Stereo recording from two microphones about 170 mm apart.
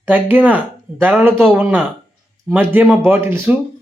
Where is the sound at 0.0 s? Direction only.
10° right (ahead or behind).